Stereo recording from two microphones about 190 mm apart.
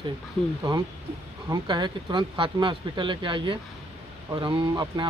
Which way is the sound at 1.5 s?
25° right (ahead or behind).